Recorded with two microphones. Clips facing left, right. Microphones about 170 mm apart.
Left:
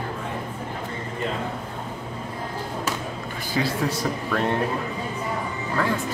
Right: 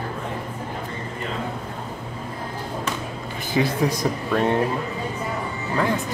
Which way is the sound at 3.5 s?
15° right (ahead or behind).